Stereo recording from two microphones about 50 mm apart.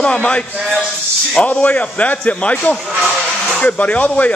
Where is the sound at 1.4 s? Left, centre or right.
Left.